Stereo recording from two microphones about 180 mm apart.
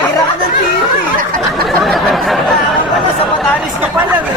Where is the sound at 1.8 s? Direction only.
Centre (ahead or behind).